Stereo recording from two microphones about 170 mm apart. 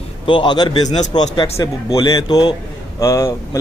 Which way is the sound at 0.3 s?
25° left (ahead or behind).